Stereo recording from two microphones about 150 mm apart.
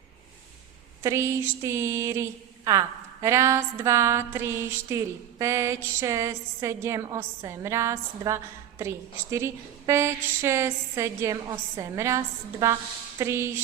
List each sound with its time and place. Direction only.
1.0 s speech: 20° right (ahead or behind)